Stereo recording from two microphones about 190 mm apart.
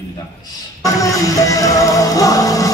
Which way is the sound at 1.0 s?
15° left (ahead or behind).